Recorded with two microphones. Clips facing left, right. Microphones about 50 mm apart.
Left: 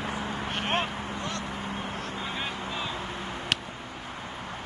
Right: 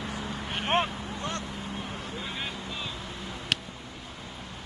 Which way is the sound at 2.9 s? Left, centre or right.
Left.